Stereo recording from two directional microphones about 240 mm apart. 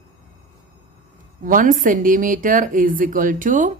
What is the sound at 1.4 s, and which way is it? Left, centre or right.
Speech, right.